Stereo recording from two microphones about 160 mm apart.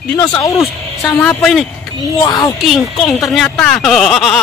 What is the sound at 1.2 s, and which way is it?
Speech, centre (ahead or behind).